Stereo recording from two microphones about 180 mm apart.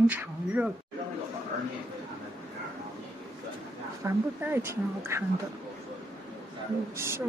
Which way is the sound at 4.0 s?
10° right (ahead or behind).